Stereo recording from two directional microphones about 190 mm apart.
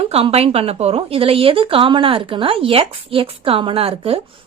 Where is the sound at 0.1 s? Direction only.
30° right (ahead or behind).